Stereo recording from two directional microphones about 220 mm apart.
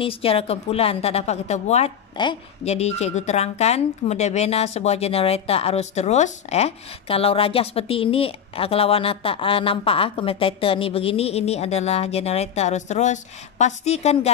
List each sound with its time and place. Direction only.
0.0 s a woman's voice: 25° left (ahead or behind)